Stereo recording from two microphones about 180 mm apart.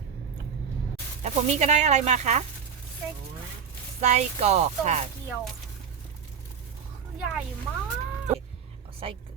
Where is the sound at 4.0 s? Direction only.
40° right (ahead or behind).